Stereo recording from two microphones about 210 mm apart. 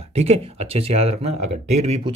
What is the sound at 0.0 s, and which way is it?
Speech, 30° right (ahead or behind).